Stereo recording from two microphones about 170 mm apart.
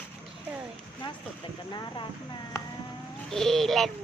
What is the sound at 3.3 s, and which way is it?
Speech, centre (ahead or behind).